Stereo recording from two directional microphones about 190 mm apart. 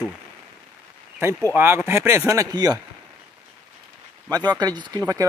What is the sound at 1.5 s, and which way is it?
Speech, 10° right (ahead or behind).